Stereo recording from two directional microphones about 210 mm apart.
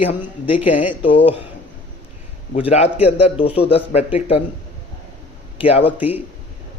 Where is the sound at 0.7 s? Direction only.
5° right (ahead or behind).